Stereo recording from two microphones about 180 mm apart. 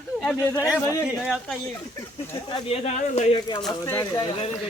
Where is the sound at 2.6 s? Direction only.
35° left (ahead or behind).